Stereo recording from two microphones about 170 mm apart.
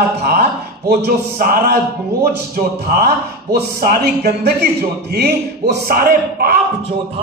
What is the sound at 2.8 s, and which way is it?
Speech, 65° right (ahead or behind).